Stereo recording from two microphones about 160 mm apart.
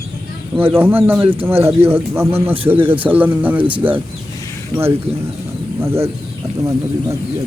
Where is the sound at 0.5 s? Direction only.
15° right (ahead or behind).